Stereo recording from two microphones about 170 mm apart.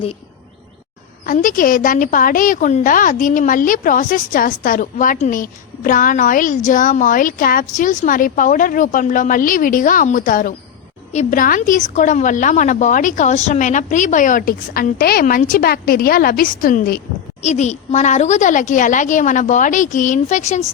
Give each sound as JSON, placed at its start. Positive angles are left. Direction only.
{"t": 1.2, "sound": "a woman's voice", "side_deg": 50}
{"t": 17.4, "sound": "a woman's voice", "side_deg": 40}